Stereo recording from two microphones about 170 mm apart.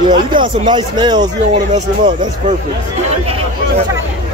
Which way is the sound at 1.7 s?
45° right (ahead or behind).